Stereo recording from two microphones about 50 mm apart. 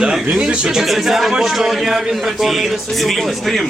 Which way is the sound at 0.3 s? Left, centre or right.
Right.